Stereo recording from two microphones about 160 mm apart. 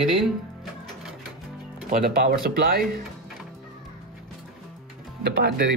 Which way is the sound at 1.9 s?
65° right (ahead or behind).